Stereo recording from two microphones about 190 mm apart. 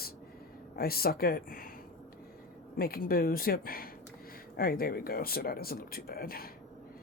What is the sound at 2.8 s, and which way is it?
Speech, 50° left (ahead or behind).